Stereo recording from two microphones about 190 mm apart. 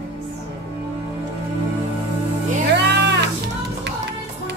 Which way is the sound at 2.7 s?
65° right (ahead or behind).